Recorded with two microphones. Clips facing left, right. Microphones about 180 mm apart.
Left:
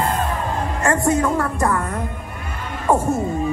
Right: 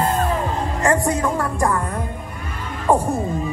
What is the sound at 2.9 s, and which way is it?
Speech, 15° right (ahead or behind).